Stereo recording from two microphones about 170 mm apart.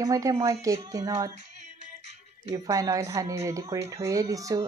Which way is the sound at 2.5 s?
20° right (ahead or behind).